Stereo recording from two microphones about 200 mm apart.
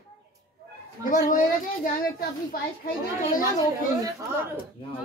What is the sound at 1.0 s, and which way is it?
Speech, 40° left (ahead or behind).